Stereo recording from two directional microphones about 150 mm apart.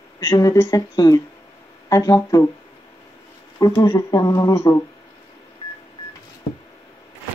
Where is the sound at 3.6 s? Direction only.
25° left (ahead or behind).